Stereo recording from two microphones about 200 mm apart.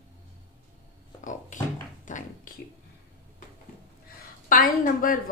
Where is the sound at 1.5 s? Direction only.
40° left (ahead or behind).